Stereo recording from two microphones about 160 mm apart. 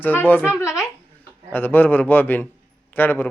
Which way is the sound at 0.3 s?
10° left (ahead or behind).